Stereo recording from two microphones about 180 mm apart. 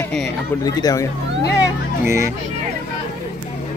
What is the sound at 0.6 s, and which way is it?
Speech, 20° left (ahead or behind).